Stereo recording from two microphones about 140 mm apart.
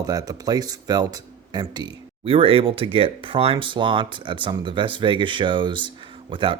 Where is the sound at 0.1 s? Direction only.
25° right (ahead or behind).